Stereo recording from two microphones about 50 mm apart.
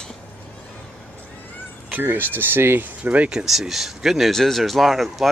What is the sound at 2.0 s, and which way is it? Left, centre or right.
Speech, right.